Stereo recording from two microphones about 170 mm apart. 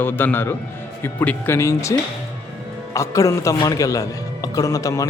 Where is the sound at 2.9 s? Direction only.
20° left (ahead or behind).